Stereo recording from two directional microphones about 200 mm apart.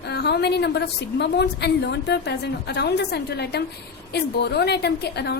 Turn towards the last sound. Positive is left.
turn(degrees=55)  # may be behind; listen again after turning